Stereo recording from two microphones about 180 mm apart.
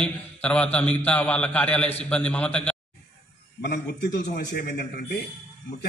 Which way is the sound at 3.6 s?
70° left (ahead or behind).